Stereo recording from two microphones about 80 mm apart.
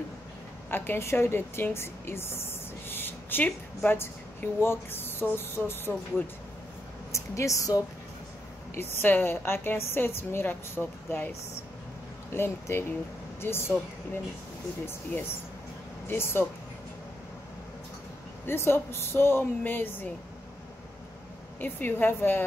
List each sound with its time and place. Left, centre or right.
0.7 s a woman's voice: left
8.7 s a woman's voice: left
16.1 s a woman's voice: left
18.5 s a woman's voice: left
21.5 s a woman's voice: left